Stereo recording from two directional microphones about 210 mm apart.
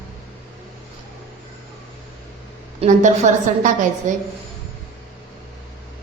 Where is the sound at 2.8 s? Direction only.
35° right (ahead or behind).